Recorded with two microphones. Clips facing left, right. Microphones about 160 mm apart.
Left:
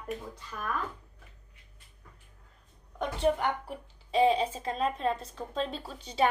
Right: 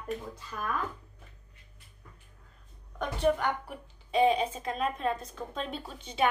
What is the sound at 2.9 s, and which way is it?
A woman's voice, 25° left (ahead or behind).